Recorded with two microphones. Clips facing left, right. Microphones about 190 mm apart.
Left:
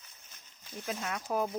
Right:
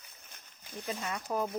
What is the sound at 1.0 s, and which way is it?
Speech, 5° left (ahead or behind).